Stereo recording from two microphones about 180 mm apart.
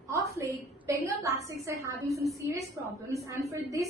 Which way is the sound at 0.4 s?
15° right (ahead or behind).